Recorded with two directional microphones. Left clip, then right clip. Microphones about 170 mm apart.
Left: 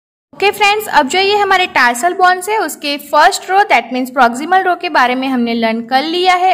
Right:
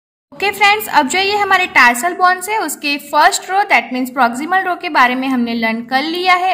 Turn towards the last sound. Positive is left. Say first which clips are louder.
# left 2 dB
turn(degrees=25)  # may be behind; listen again after turning